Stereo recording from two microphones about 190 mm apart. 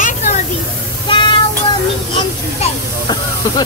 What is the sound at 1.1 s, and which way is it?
Child singing, 25° left (ahead or behind).